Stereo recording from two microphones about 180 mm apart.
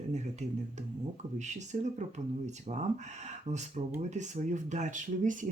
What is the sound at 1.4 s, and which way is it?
Speech, 40° right (ahead or behind).